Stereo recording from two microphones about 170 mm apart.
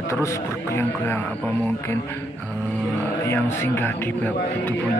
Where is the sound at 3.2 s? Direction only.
15° left (ahead or behind).